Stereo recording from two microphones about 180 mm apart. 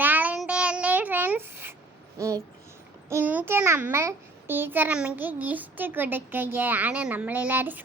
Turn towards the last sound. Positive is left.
turn(degrees=-10)  # may be behind; listen again after turning